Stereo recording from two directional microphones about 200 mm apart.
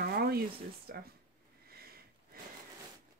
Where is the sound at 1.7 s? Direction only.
50° right (ahead or behind).